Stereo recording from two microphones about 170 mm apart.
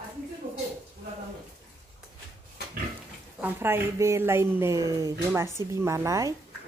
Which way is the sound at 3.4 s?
15° right (ahead or behind).